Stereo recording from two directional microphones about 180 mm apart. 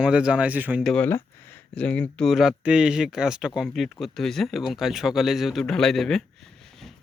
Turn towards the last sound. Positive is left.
turn(degrees=0)  # may be behind; listen again after turning